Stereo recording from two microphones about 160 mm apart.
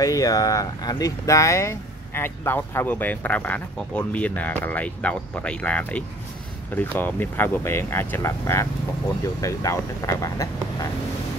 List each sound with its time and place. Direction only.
0.0 s speech: 20° left (ahead or behind)